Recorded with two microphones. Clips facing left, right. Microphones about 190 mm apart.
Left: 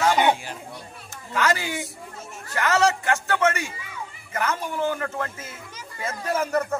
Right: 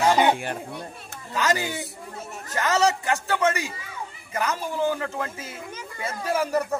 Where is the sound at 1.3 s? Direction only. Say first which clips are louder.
Left 1 dB; 20° right (ahead or behind).